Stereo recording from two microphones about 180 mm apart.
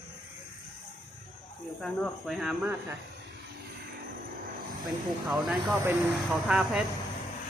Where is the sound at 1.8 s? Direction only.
Centre (ahead or behind).